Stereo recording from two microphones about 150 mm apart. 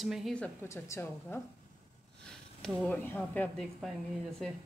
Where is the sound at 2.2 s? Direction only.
5° left (ahead or behind).